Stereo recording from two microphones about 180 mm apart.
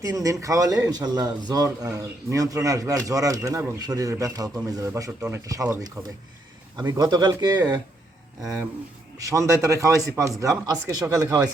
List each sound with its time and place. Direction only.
0.0 s speech: 20° right (ahead or behind)
9.1 s a man's voice: 20° right (ahead or behind)